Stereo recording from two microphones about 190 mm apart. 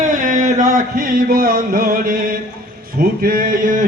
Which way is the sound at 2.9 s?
50° right (ahead or behind).